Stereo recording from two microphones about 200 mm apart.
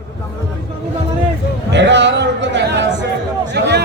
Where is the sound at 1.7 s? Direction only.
60° right (ahead or behind).